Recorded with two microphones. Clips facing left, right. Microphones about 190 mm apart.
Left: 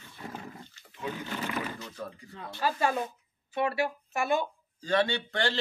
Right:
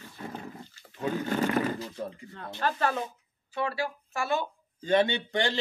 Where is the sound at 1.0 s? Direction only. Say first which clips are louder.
Right 7 dB; 40° right (ahead or behind).